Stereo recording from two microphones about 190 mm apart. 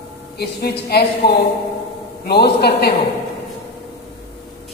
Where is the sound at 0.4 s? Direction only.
55° left (ahead or behind).